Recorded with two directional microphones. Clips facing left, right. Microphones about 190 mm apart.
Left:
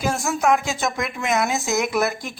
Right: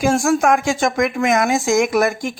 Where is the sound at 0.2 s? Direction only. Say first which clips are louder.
Right 4 dB; 50° right (ahead or behind).